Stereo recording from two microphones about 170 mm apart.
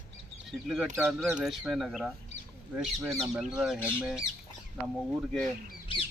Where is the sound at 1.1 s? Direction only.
15° right (ahead or behind).